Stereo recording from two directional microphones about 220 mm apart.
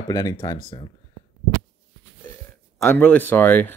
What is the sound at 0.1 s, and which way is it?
Speech, 15° left (ahead or behind).